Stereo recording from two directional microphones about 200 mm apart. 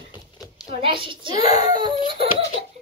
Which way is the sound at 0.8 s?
25° right (ahead or behind).